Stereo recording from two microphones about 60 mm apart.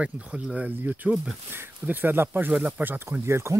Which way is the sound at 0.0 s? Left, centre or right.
Centre.